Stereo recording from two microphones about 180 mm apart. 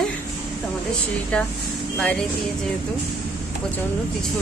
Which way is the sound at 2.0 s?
5° left (ahead or behind).